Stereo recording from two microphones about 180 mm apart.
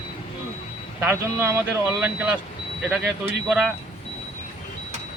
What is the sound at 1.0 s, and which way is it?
Speech, 15° right (ahead or behind).